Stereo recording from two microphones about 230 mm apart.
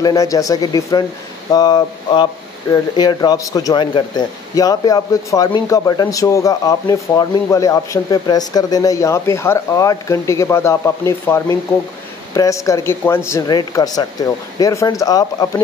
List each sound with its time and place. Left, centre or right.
0.0 s speech: centre